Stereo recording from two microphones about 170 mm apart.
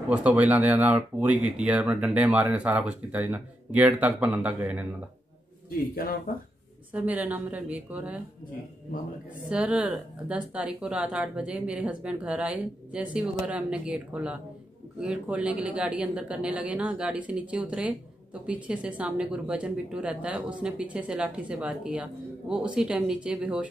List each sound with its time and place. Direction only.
0.1 s speech: 5° right (ahead or behind)
5.7 s a man's voice: 60° left (ahead or behind)
6.9 s speech: 10° right (ahead or behind)
9.5 s speech: 5° right (ahead or behind)